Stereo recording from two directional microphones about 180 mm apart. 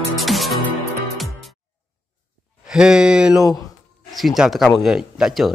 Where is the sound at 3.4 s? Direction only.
20° left (ahead or behind).